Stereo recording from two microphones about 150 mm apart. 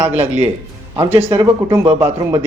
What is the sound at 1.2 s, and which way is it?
Speech, 20° right (ahead or behind).